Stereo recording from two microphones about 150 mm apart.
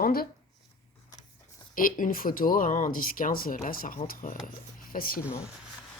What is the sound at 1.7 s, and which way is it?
Speech, 65° left (ahead or behind).